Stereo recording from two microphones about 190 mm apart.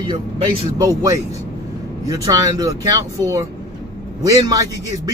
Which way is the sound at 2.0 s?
20° right (ahead or behind).